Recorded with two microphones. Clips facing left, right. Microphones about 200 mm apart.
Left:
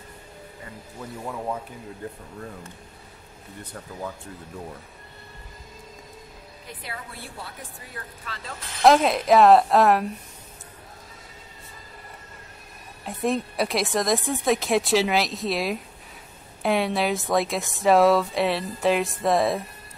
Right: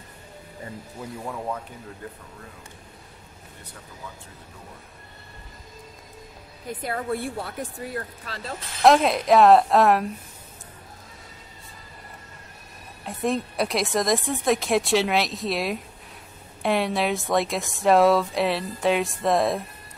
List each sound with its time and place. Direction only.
1.2 s speech: centre (ahead or behind)
6.8 s a woman's voice: 50° right (ahead or behind)
8.3 s speech: 35° right (ahead or behind)
8.8 s speech: centre (ahead or behind)
13.0 s speech: centre (ahead or behind)